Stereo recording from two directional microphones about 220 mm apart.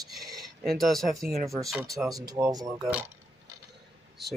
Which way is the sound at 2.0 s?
15° right (ahead or behind).